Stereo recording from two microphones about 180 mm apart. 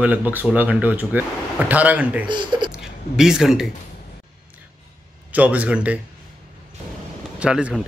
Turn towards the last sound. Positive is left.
turn(degrees=-5)  # may be behind; listen again after turning